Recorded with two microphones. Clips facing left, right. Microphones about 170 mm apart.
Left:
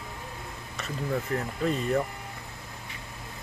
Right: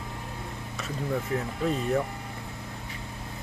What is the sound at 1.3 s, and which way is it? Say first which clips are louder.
Speech: even; 5° right (ahead or behind).